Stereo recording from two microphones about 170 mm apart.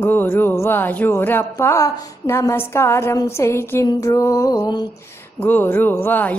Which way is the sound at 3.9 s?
20° left (ahead or behind).